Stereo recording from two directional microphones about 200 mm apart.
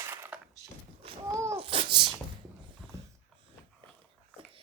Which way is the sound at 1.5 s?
25° right (ahead or behind).